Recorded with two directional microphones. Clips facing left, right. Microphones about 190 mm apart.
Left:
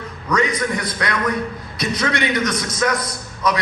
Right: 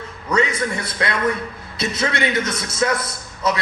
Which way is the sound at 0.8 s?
25° right (ahead or behind).